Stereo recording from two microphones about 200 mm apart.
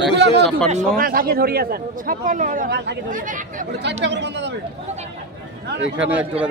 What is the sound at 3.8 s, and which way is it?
Speech, 60° right (ahead or behind).